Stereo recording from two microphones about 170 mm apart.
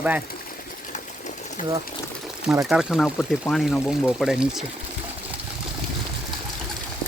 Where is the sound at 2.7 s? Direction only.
5° right (ahead or behind).